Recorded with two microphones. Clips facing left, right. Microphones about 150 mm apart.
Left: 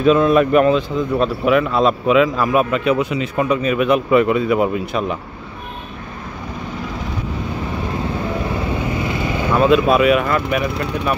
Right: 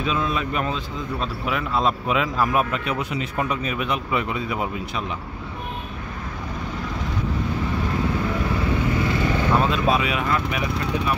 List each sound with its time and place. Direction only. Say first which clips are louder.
0.0 s speech: left 12 dB; 55° left (ahead or behind)
9.6 s speech: left 8 dB; 65° left (ahead or behind)